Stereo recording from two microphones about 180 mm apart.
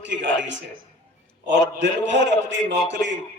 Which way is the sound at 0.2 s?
80° right.